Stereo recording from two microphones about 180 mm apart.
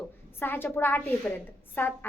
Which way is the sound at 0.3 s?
10° left (ahead or behind).